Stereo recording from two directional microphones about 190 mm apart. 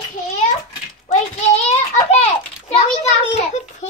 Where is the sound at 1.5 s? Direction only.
35° left (ahead or behind).